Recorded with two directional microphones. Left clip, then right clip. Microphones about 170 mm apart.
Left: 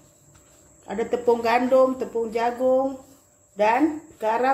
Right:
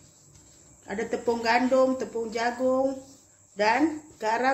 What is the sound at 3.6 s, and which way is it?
Speech, 5° left (ahead or behind).